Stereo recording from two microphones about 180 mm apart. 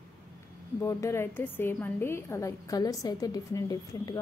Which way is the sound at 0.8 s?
15° left (ahead or behind).